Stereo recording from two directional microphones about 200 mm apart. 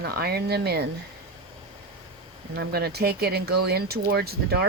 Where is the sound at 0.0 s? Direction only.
50° right (ahead or behind).